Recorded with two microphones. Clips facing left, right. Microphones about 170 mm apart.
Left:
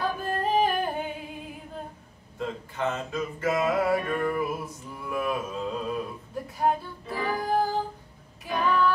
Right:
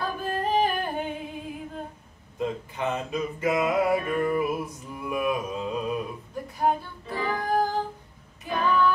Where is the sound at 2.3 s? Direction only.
15° right (ahead or behind).